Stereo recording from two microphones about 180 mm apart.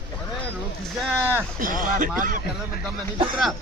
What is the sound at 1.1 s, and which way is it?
Speech, 10° right (ahead or behind).